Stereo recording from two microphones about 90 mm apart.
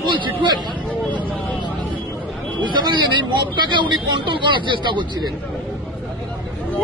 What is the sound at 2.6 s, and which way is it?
Speech, 60° right (ahead or behind).